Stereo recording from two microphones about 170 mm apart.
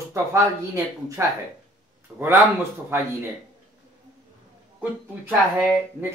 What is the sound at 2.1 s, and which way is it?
Speech, 5° left (ahead or behind).